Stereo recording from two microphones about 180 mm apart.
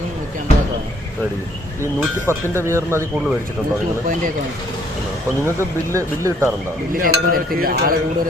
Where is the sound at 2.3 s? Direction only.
15° right (ahead or behind).